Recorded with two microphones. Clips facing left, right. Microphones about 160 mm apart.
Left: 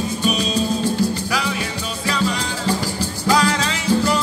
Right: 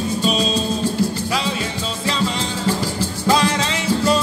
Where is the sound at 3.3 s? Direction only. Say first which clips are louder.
Even; 25° right (ahead or behind).